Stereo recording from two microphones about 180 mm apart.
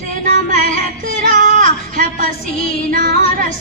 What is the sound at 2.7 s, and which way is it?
Music, 45° right (ahead or behind).